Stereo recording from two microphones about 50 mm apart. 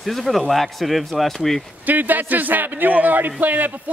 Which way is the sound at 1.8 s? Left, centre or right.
Right.